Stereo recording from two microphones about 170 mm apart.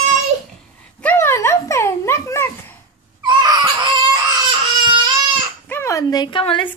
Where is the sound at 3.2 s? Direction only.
25° right (ahead or behind).